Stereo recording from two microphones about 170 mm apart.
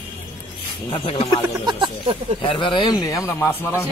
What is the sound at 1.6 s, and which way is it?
Speech, 25° right (ahead or behind).